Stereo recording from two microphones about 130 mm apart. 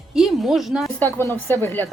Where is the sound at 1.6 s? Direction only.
15° left (ahead or behind).